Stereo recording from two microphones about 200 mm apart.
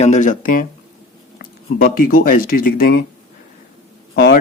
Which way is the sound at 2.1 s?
45° left (ahead or behind).